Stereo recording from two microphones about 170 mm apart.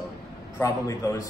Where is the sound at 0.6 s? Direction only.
20° left (ahead or behind).